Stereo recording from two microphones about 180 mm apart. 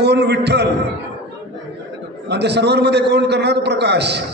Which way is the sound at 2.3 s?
70° right (ahead or behind).